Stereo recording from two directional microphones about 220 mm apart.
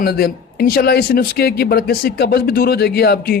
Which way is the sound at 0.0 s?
45° left (ahead or behind).